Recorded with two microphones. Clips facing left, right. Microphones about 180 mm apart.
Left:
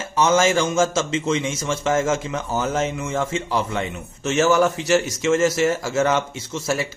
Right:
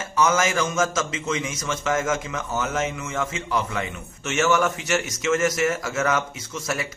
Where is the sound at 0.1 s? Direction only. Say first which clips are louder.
Left 4 dB; 30° left (ahead or behind).